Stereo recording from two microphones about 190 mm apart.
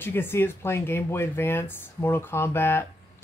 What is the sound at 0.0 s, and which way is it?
Speech, 10° left (ahead or behind).